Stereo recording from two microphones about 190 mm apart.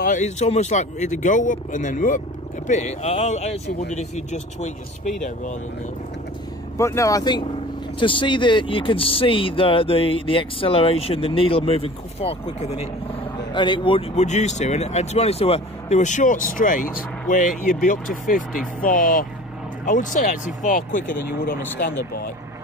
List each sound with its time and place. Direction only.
0.0 s speech: 40° left (ahead or behind)
6.8 s speech: 15° left (ahead or behind); by 21.2 s 40° left (ahead or behind)